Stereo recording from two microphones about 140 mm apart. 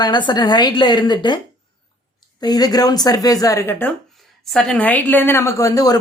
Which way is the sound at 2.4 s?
30° left (ahead or behind).